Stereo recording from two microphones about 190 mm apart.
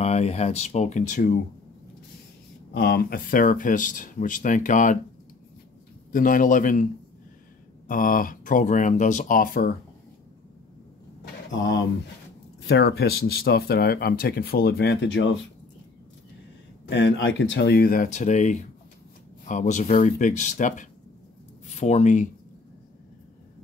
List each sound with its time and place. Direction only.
0.0 s speech: 35° left (ahead or behind)
2.7 s speech: 55° left (ahead or behind)
6.1 s speech: 45° left (ahead or behind)
7.9 s speech: 45° left (ahead or behind)
12.6 s speech: 60° left (ahead or behind)
16.9 s speech: 75° left (ahead or behind); by 22.3 s 40° left (ahead or behind)